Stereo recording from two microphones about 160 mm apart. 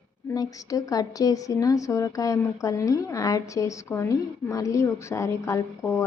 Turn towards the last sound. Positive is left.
turn(degrees=15)  # may be behind; listen again after turning